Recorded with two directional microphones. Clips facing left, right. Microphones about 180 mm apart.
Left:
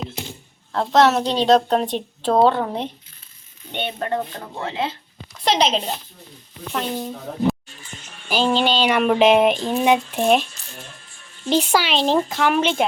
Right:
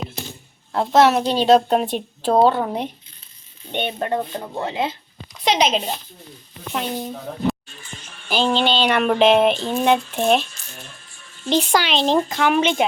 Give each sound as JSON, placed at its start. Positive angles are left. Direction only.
{"t": 0.7, "sound": "speech", "side_deg": -10}
{"t": 3.7, "sound": "speech", "side_deg": -20}
{"t": 5.5, "sound": "speech", "side_deg": -5}
{"t": 8.3, "sound": "speech", "side_deg": 10}
{"t": 11.4, "sound": "speech", "side_deg": 5}